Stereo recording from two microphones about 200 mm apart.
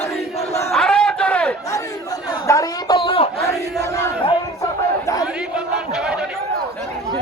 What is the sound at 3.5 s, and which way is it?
Crowd, 15° left (ahead or behind).